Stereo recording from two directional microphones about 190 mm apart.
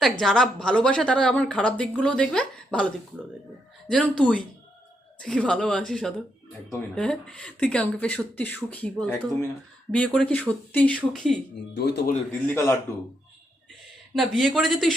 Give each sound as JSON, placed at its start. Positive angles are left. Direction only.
{"t": 0.0, "sound": "a woman's voice", "side_deg": 0}
{"t": 5.2, "sound": "a woman's voice", "side_deg": 5}
{"t": 11.7, "sound": "speech", "side_deg": 60}
{"t": 12.3, "sound": "speech", "side_deg": 15}
{"t": 14.2, "sound": "a woman's voice", "side_deg": 0}